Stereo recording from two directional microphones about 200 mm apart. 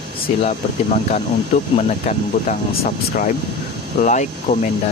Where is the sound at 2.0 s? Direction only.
40° left (ahead or behind).